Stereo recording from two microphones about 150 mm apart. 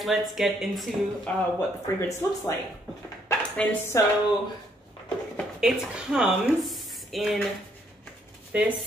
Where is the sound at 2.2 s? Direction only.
20° left (ahead or behind).